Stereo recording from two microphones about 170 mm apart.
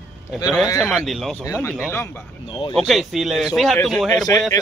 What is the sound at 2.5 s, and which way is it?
Speech, 30° left (ahead or behind).